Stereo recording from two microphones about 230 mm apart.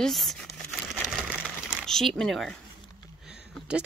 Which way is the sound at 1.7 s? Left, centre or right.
Centre.